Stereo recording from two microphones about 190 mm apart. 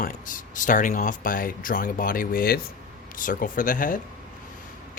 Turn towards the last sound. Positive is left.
turn(degrees=45)  # may be behind; listen again after turning